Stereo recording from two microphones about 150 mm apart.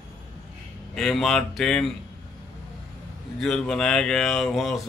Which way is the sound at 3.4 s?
5° left (ahead or behind).